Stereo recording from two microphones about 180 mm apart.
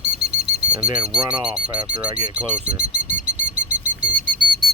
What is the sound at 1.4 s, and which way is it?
Speech, 5° right (ahead or behind).